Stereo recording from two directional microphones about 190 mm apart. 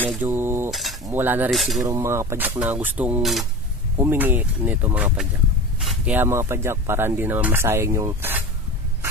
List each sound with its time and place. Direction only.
0.1 s cutlery: 10° right (ahead or behind)
0.7 s cutlery: centre (ahead or behind)
1.0 s speech: 10° right (ahead or behind)
1.5 s speech: centre (ahead or behind)
1.9 s speech: 15° right (ahead or behind)
4.0 s speech: 10° right (ahead or behind)